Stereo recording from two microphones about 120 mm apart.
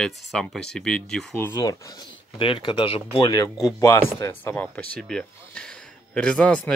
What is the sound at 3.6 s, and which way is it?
Speech, 25° left (ahead or behind).